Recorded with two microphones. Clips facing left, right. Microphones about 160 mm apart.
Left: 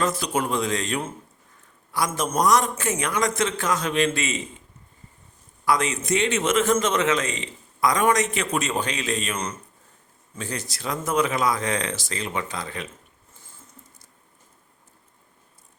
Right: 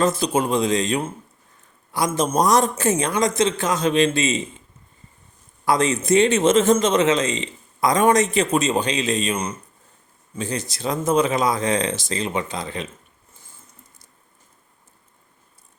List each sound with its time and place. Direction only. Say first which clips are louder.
0.0 s a man's voice: right 5 dB; 25° right (ahead or behind)
5.6 s a man's voice: right 4 dB; 30° right (ahead or behind)